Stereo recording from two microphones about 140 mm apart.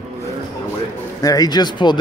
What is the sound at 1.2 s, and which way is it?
Speech, 25° left (ahead or behind).